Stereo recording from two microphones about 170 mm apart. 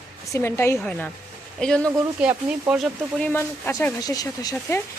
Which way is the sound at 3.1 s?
10° left (ahead or behind).